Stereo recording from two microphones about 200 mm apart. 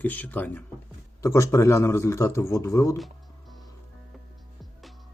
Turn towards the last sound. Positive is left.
turn(degrees=0)  # may be behind; listen again after turning